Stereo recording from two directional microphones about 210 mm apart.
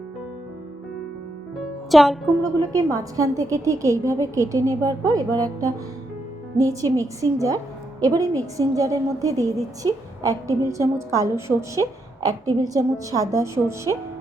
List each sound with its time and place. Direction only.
1.9 s speech: centre (ahead or behind)
2.4 s a woman's voice: 15° right (ahead or behind)
6.9 s a woman's voice: 15° right (ahead or behind)